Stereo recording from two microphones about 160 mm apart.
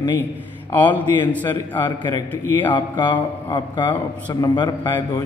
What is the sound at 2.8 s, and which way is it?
A man's voice, 30° left (ahead or behind).